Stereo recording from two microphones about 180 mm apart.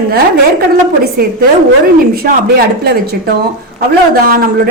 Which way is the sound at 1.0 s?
55° right (ahead or behind).